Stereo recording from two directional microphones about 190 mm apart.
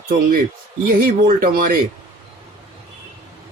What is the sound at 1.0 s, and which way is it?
Speech, 50° right (ahead or behind).